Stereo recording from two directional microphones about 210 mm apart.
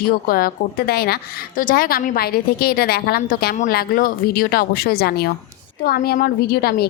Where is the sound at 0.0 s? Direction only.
45° left (ahead or behind).